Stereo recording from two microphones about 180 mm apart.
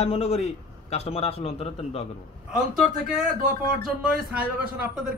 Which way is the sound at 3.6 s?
50° right (ahead or behind).